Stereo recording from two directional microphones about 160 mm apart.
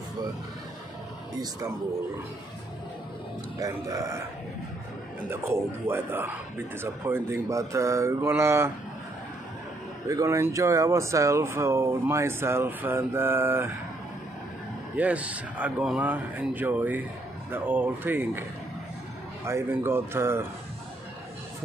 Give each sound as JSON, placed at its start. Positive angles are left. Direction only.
{"t": 3.5, "sound": "speech", "side_deg": -20}
{"t": 5.3, "sound": "speech", "side_deg": -15}
{"t": 10.0, "sound": "speech", "side_deg": -20}
{"t": 15.0, "sound": "speech", "side_deg": -10}
{"t": 19.4, "sound": "speech", "side_deg": -15}